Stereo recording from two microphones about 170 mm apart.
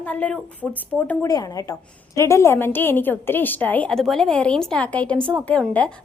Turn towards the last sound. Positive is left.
turn(degrees=5)  # may be behind; listen again after turning